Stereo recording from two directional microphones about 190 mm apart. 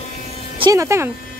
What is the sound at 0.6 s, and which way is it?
Speech, 15° right (ahead or behind).